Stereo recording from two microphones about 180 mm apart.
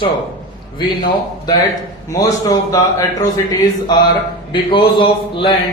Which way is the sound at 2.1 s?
20° left (ahead or behind).